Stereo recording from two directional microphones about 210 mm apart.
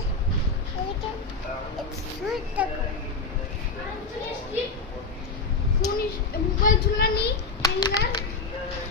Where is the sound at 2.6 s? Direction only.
5° right (ahead or behind).